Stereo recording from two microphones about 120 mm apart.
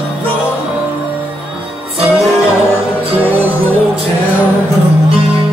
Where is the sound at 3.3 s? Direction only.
15° right (ahead or behind).